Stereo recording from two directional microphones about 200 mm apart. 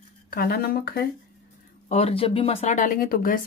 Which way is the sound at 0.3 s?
50° left (ahead or behind).